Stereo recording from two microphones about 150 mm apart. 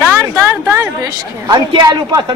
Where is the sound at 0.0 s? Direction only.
15° right (ahead or behind).